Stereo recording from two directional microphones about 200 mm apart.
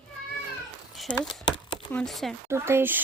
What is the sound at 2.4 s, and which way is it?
Speech, 10° right (ahead or behind).